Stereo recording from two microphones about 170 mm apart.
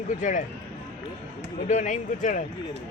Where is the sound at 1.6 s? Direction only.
45° left (ahead or behind).